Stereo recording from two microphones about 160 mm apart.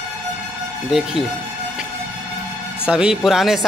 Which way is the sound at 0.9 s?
5° right (ahead or behind).